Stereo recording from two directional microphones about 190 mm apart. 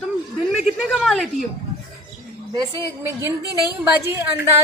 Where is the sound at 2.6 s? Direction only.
15° right (ahead or behind).